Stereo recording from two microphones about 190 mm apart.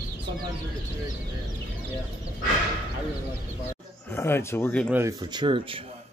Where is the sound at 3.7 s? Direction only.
10° left (ahead or behind).